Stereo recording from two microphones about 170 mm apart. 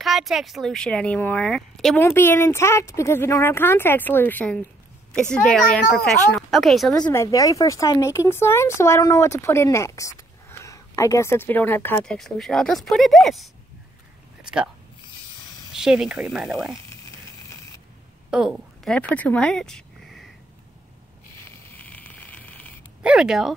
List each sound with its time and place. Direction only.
0.0 s a woman's voice: centre (ahead or behind)
2.0 s a child's voice: 15° left (ahead or behind)
6.9 s speech: 15° left (ahead or behind); by 13.5 s centre (ahead or behind)
14.4 s a sound: 5° right (ahead or behind)
15.7 s a woman's voice: centre (ahead or behind)
18.3 s a sound: 5° right (ahead or behind)
18.9 s speech: 10° left (ahead or behind)
21.7 s a sound: 10° left (ahead or behind)
23.0 s a woman's voice: 5° right (ahead or behind)